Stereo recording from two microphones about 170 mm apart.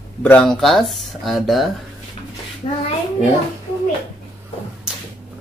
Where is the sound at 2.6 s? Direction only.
40° left (ahead or behind).